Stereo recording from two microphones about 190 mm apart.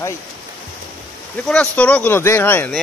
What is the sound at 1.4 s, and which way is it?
Speech, 5° left (ahead or behind).